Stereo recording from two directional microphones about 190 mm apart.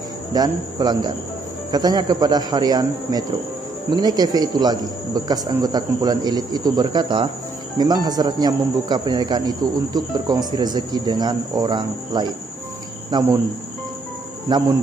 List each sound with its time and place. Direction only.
0.3 s speech: 20° right (ahead or behind)
14.5 s speech: 20° right (ahead or behind)